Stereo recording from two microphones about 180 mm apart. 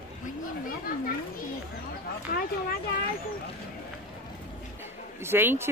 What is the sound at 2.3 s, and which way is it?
Speech, 55° left (ahead or behind).